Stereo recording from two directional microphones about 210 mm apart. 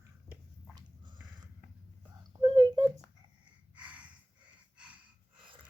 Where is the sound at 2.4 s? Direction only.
20° right (ahead or behind).